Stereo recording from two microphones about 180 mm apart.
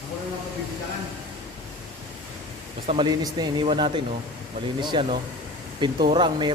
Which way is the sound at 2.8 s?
25° right (ahead or behind).